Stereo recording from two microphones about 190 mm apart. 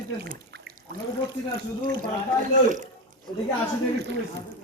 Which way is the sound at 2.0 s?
40° right (ahead or behind).